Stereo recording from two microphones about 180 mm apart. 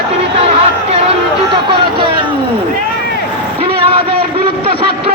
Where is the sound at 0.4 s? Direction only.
35° right (ahead or behind).